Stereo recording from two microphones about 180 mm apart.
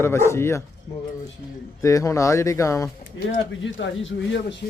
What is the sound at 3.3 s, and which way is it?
Speech, 90° left.